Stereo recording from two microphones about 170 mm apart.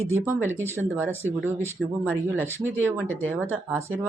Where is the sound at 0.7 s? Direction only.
10° right (ahead or behind).